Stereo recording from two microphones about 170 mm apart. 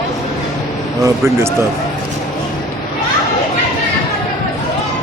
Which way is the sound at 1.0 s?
15° right (ahead or behind).